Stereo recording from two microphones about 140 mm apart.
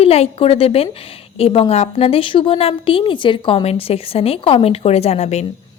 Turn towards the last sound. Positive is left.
turn(degrees=50)  # may be behind; listen again after turning